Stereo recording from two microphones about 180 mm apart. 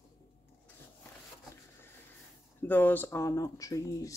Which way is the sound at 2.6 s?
10° left (ahead or behind).